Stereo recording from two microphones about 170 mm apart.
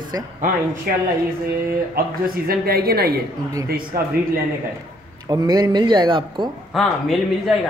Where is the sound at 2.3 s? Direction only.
65° right (ahead or behind).